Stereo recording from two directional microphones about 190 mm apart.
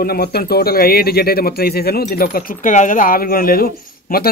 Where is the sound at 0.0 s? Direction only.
55° left (ahead or behind).